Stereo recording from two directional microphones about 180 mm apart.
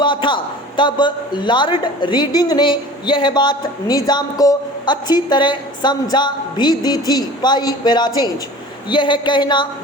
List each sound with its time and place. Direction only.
0.0 s a man's voice: 25° left (ahead or behind)